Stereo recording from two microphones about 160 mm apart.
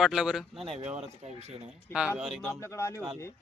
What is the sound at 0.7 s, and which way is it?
Speech, 40° right (ahead or behind).